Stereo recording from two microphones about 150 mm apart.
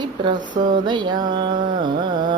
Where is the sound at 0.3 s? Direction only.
60° right (ahead or behind).